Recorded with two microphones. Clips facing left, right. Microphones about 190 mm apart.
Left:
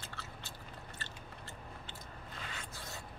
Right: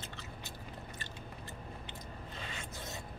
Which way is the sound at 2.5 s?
20° right (ahead or behind).